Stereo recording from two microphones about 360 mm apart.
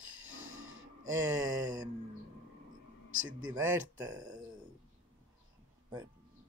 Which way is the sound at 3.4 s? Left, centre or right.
Centre.